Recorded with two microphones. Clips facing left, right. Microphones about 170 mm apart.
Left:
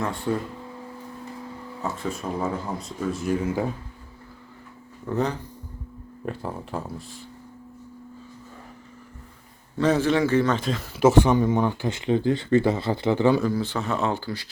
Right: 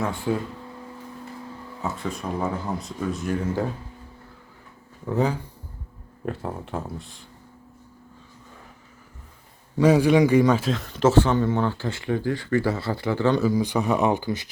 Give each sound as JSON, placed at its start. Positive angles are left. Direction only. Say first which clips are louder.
{"t": 0.0, "sound": "speech", "louder": "right 1 dB", "side_deg": -5}
{"t": 1.8, "sound": "speech", "louder": "even", "side_deg": 0}
{"t": 5.0, "sound": "speech", "louder": "right 2 dB", "side_deg": -10}
{"t": 9.7, "sound": "a man's voice", "louder": "right 4 dB", "side_deg": -10}
{"t": 13.4, "sound": "speech", "louder": "right 3 dB", "side_deg": -15}